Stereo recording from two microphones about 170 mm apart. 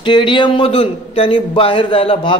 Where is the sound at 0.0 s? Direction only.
30° left (ahead or behind).